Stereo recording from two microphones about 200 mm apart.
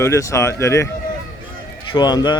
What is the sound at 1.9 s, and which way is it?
Speech, 20° left (ahead or behind).